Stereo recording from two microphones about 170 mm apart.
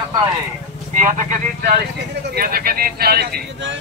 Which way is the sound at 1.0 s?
50° right (ahead or behind).